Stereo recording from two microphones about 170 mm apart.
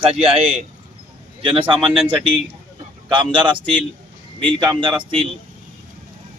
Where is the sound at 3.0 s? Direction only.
30° right (ahead or behind).